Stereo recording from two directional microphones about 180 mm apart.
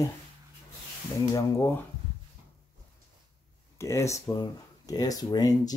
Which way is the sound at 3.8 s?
15° left (ahead or behind).